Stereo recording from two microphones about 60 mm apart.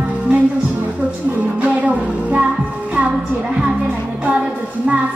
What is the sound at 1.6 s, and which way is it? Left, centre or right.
Music, right.